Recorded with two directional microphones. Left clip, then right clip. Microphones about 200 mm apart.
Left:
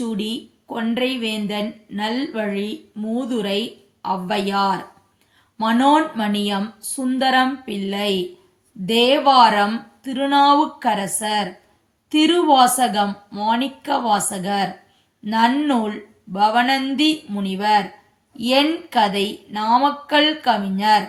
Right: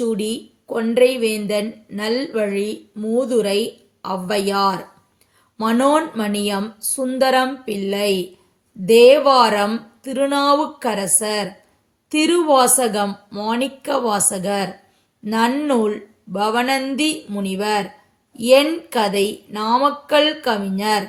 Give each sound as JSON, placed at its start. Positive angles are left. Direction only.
{"t": 0.1, "sound": "a woman's voice", "side_deg": -40}